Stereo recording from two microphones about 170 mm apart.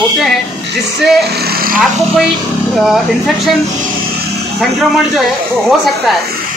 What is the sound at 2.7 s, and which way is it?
Speech, centre (ahead or behind).